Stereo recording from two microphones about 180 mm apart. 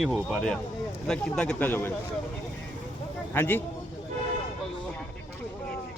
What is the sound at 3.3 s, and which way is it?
Speech, 10° left (ahead or behind).